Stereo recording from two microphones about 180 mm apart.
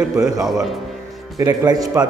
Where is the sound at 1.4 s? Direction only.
20° right (ahead or behind).